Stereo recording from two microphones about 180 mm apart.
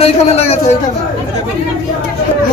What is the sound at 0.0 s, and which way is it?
Speech, 35° left (ahead or behind).